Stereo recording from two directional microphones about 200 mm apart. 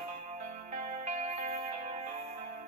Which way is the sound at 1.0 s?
35° right (ahead or behind).